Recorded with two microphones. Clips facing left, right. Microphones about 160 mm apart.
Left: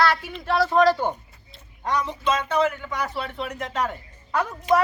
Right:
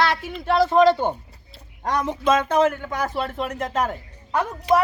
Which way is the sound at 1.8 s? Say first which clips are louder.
Right 2 dB; 45° right (ahead or behind).